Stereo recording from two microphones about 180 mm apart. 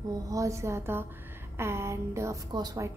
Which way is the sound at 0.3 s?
15° right (ahead or behind).